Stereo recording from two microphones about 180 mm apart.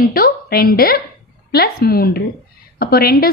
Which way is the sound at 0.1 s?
55° left (ahead or behind).